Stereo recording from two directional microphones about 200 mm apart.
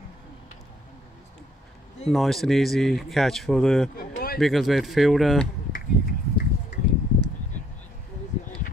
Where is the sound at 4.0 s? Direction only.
45° left (ahead or behind).